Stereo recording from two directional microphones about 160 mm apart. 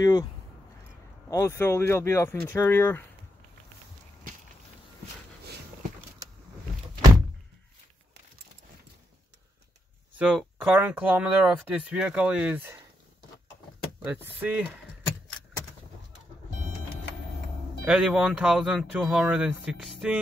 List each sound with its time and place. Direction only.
0.0 s speech: 30° left (ahead or behind)
1.3 s speech: 15° left (ahead or behind)
10.1 s speech: 10° right (ahead or behind)
14.0 s speech: 10° right (ahead or behind)
17.8 s speech: 5° right (ahead or behind)